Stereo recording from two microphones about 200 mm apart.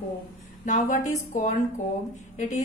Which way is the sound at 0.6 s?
40° left (ahead or behind).